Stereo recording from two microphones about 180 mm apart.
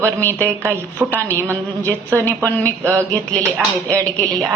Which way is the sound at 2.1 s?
10° left (ahead or behind).